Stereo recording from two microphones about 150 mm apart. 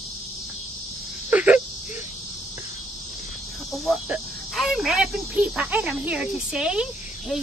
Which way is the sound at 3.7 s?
Centre (ahead or behind).